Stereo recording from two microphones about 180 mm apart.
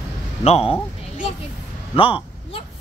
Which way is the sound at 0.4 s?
35° left (ahead or behind).